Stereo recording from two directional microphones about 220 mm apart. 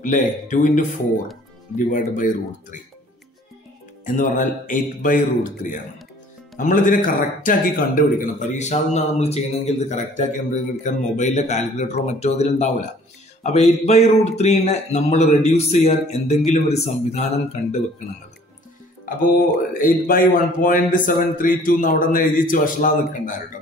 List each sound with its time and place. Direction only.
0.0 s a man's voice: 35° left (ahead or behind)
4.0 s a man's voice: 35° left (ahead or behind)
19.7 s a man's voice: 40° left (ahead or behind)